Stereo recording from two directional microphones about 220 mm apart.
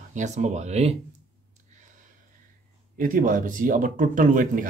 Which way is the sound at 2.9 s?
40° right (ahead or behind).